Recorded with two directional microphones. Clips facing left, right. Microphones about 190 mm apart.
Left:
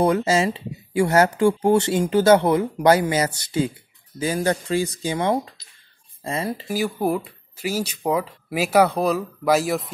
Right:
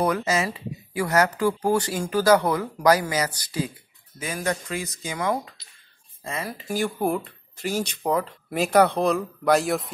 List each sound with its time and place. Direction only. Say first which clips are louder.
0.0 s speech: left 5 dB; 25° left (ahead or behind)
6.7 s speech: left 1 dB; 5° left (ahead or behind)